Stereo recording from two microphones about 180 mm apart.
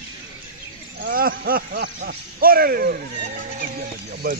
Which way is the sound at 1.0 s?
55° right (ahead or behind).